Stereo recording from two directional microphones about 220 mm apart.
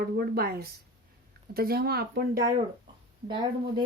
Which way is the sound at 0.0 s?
45° right (ahead or behind).